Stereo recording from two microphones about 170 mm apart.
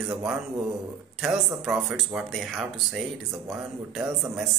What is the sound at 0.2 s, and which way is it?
Speech, centre (ahead or behind).